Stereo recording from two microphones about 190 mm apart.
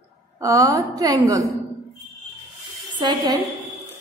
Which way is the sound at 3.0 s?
25° right (ahead or behind).